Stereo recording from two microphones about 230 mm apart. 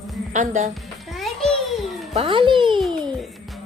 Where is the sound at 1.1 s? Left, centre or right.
Centre.